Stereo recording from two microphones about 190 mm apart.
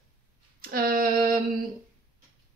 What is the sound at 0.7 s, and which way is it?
Speech, 50° right (ahead or behind).